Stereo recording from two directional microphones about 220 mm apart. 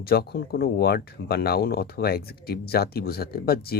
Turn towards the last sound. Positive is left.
turn(degrees=45)  # may be behind; listen again after turning